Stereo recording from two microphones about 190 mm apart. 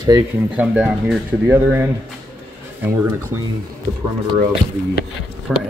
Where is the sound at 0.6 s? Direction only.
5° right (ahead or behind).